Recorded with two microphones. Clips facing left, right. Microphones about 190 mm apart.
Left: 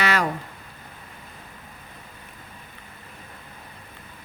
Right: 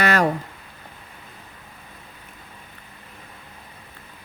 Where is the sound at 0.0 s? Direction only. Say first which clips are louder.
Right 4 dB; 45° right (ahead or behind).